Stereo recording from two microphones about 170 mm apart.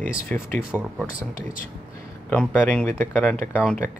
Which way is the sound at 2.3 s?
5° left (ahead or behind).